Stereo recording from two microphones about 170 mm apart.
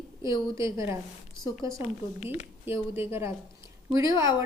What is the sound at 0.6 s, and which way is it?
Speech, 15° right (ahead or behind).